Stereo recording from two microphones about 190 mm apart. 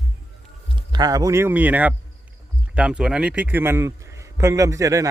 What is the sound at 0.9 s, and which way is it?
A man's voice, 20° right (ahead or behind).